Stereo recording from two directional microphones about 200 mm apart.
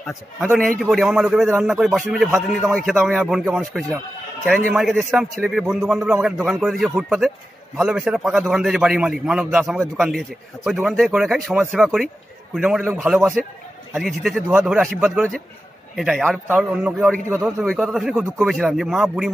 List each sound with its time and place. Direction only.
0.5 s a man's voice: centre (ahead or behind)